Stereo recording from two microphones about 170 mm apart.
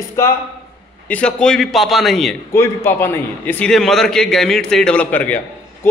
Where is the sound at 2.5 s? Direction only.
15° left (ahead or behind).